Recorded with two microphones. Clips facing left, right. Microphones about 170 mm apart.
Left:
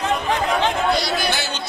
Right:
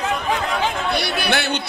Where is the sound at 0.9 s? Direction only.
60° right (ahead or behind).